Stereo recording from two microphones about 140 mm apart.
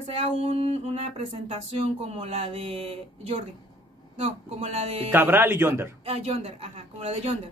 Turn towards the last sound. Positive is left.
turn(degrees=-50)  # may be behind; listen again after turning